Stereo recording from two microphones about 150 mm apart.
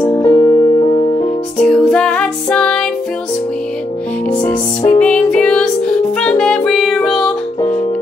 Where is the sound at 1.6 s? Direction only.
5° left (ahead or behind).